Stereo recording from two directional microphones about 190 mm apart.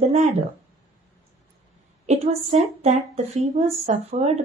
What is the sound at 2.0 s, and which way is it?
Speech, 35° right (ahead or behind).